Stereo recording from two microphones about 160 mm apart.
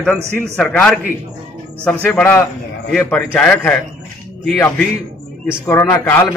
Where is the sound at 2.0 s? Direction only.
10° left (ahead or behind).